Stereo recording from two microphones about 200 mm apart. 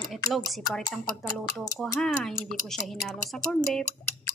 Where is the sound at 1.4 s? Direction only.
20° left (ahead or behind).